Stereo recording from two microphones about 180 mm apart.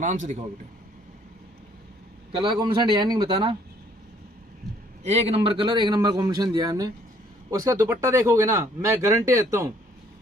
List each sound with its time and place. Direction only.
0.0 s a man's voice: 40° right (ahead or behind)
2.3 s a man's voice: 25° right (ahead or behind)
5.0 s a man's voice: 35° right (ahead or behind)